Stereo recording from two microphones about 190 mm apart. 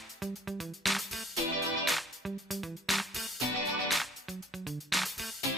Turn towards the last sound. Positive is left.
turn(degrees=0)  # may be behind; listen again after turning